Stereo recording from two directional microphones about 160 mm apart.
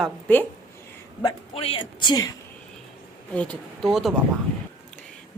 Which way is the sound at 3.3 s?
5° left (ahead or behind).